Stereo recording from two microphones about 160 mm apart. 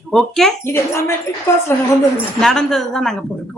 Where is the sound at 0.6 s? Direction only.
15° left (ahead or behind).